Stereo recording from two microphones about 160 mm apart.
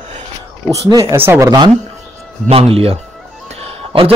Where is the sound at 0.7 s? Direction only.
20° right (ahead or behind).